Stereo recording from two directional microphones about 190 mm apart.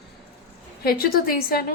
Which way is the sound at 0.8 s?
50° left (ahead or behind).